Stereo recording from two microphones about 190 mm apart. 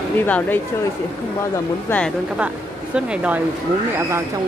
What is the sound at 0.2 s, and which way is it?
Speech, 10° left (ahead or behind).